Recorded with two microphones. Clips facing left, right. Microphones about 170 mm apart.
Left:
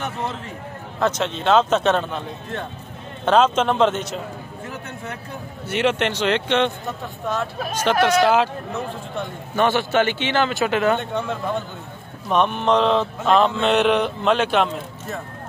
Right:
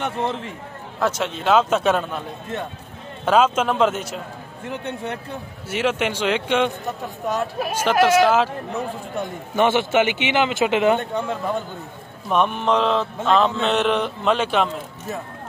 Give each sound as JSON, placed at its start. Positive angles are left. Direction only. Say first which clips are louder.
{"t": 0.0, "sound": "a man's voice", "louder": "right 3 dB", "side_deg": -25}
{"t": 0.9, "sound": "speech", "louder": "left 1 dB", "side_deg": -5}
{"t": 4.6, "sound": "speech", "louder": "right 7 dB", "side_deg": -30}
{"t": 5.7, "sound": "mantra", "louder": "left 1 dB", "side_deg": -5}
{"t": 9.6, "sound": "speech", "louder": "right 1 dB", "side_deg": -20}
{"t": 11.0, "sound": "mantra", "louder": "even", "side_deg": 0}